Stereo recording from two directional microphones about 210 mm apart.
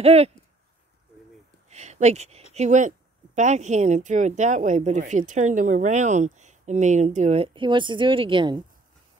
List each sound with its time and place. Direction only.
0.0 s speech: 30° right (ahead or behind)
1.7 s a sound: 30° right (ahead or behind)
2.5 s speech: 35° right (ahead or behind)